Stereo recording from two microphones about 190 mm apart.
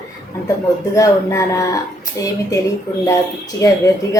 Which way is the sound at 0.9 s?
15° left (ahead or behind).